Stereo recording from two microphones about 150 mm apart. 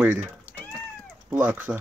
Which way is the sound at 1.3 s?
10° right (ahead or behind).